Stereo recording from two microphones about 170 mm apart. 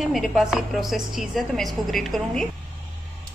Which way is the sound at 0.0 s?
Centre (ahead or behind).